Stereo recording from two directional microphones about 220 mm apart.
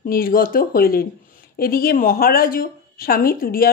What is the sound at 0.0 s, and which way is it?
Speech, 40° left (ahead or behind).